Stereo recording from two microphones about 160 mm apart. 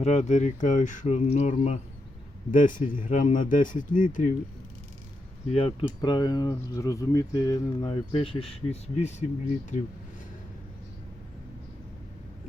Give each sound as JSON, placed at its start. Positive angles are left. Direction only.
{"t": 0.0, "sound": "speech", "side_deg": 45}
{"t": 5.5, "sound": "speech", "side_deg": 35}
{"t": 6.0, "sound": "speech", "side_deg": 25}